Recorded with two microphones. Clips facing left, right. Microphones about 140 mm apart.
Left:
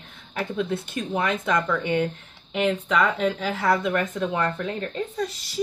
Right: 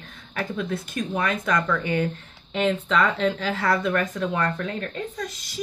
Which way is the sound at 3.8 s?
20° left (ahead or behind).